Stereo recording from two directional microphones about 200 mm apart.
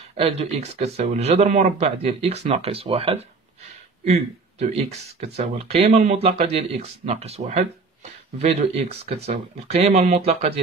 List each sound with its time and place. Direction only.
0.0 s speech: 30° right (ahead or behind)